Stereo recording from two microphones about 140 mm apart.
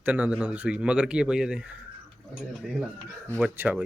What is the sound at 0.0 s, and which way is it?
Speech, 10° right (ahead or behind).